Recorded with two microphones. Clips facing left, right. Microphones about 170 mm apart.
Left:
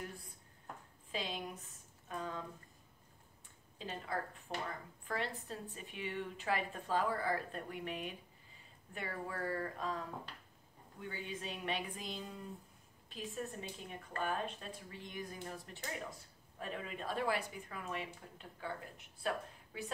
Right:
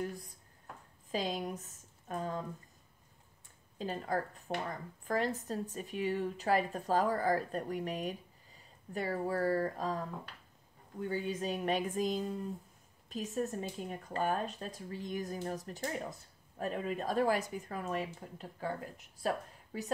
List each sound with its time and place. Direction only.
1.1 s speech: 40° right (ahead or behind)
3.7 s a woman's voice: 40° right (ahead or behind)